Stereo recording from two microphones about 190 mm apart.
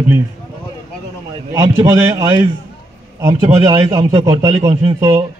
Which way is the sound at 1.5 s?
15° right (ahead or behind).